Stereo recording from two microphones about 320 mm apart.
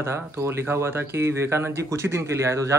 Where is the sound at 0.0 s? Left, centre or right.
Centre.